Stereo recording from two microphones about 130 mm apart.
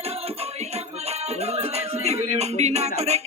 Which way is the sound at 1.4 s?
55° right (ahead or behind).